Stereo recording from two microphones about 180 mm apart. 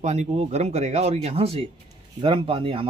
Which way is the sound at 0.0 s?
40° right (ahead or behind).